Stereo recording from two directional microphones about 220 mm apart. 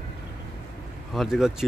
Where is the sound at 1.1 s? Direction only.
Centre (ahead or behind).